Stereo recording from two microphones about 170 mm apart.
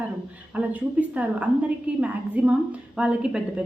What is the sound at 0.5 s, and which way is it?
A woman's voice, 10° right (ahead or behind).